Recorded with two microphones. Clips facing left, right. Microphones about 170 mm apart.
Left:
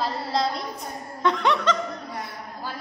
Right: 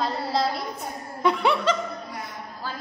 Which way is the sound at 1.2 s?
10° right (ahead or behind).